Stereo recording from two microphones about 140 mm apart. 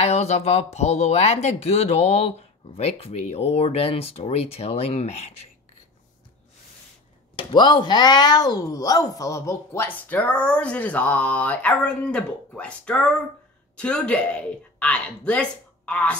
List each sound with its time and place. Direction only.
0.0 s speech: 50° left (ahead or behind)
7.3 s speech: 30° left (ahead or behind); by 16.2 s 10° left (ahead or behind)